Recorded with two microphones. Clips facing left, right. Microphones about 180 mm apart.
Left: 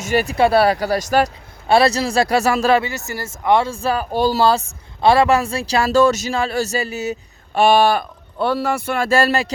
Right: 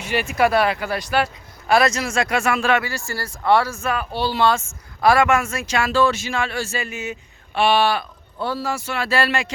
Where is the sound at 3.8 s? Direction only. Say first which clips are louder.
Left 5 dB; 35° left (ahead or behind).